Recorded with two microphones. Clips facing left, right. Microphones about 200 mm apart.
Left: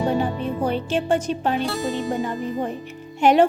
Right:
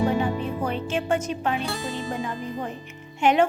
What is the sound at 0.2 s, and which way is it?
Music, 35° left (ahead or behind).